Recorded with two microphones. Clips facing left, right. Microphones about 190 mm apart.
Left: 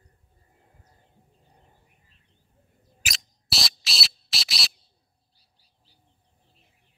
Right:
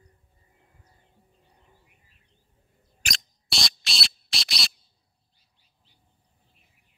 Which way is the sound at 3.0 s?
5° left (ahead or behind).